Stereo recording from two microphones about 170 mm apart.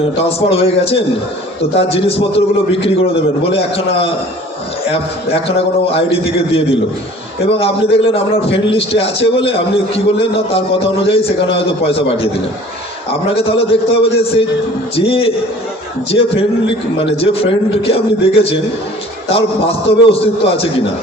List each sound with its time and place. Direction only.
0.2 s a man's voice: 35° left (ahead or behind)